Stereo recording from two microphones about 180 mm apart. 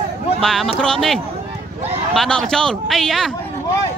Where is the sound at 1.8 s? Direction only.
35° right (ahead or behind).